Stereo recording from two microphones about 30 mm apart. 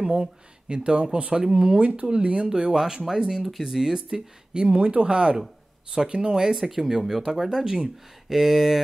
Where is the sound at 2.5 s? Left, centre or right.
Right.